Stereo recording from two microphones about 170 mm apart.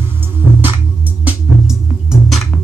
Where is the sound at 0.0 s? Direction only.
15° right (ahead or behind).